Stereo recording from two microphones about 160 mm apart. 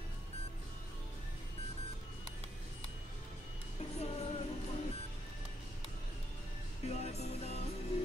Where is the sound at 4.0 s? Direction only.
40° left (ahead or behind).